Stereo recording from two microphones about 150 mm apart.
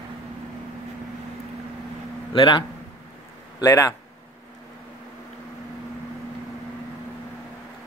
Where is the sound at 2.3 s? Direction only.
30° left (ahead or behind).